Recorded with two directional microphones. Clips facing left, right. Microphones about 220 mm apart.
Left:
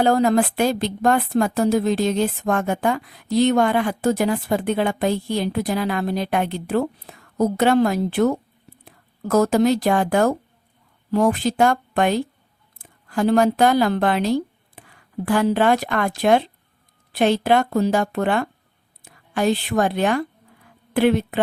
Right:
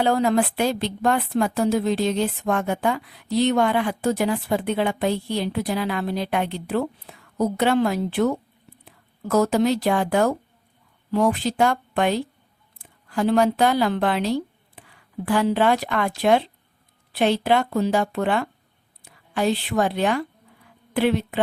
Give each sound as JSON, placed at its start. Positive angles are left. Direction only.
{"t": 0.0, "sound": "speech", "side_deg": 45}